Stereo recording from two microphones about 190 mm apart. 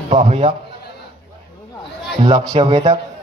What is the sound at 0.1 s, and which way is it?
Speech, 30° right (ahead or behind).